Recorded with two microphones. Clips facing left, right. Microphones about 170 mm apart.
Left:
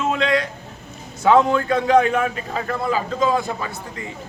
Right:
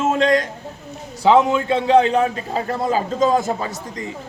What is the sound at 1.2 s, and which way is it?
A man's voice, 20° right (ahead or behind).